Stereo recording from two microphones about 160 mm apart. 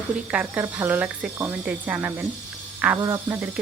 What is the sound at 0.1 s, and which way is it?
Speech, 10° right (ahead or behind).